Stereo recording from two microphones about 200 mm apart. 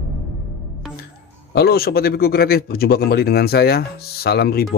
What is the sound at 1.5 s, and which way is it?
A man's voice, 50° left (ahead or behind).